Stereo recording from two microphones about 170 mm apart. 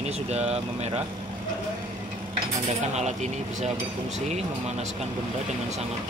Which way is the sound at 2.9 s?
40° right (ahead or behind).